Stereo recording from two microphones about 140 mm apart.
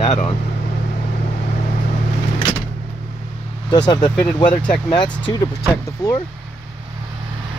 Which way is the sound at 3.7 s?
30° left (ahead or behind).